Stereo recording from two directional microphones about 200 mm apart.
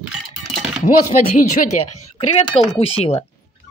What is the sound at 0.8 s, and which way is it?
Speech, 40° left (ahead or behind).